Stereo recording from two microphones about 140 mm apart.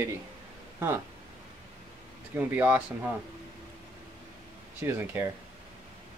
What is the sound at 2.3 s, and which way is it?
Speech, 10° right (ahead or behind).